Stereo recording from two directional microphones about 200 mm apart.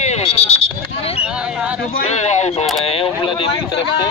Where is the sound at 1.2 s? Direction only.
5° right (ahead or behind).